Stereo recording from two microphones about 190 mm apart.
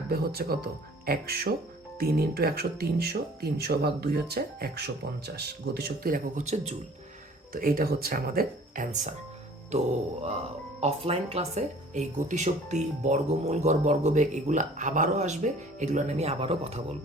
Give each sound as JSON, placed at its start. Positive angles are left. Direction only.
{"t": 0.1, "sound": "speech", "side_deg": -55}
{"t": 7.5, "sound": "speech", "side_deg": -50}
{"t": 10.8, "sound": "speech", "side_deg": -30}